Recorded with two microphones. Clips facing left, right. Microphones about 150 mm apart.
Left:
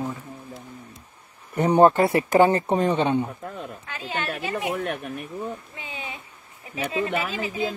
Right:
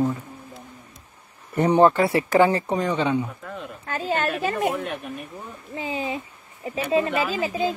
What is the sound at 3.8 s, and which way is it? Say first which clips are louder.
Speech: right 7 dB; 45° right (ahead or behind).